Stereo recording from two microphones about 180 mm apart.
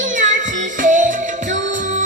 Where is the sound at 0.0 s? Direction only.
45° right (ahead or behind).